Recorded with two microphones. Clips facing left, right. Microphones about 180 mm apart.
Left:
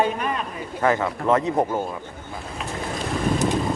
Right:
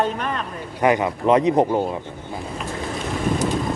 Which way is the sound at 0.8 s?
15° right (ahead or behind).